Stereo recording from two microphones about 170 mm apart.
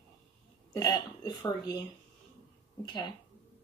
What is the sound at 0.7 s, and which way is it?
Speech, 25° left (ahead or behind).